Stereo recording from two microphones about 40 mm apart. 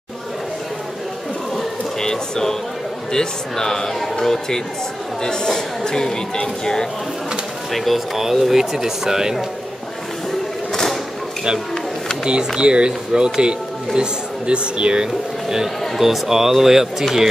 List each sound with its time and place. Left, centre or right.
2.0 s music: centre
3.1 s speech: centre
7.7 s speech: centre
10.7 s a sound: centre
12.3 s a man's voice: right
15.4 s speech: centre